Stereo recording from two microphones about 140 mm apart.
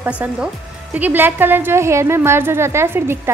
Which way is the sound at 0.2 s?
10° right (ahead or behind).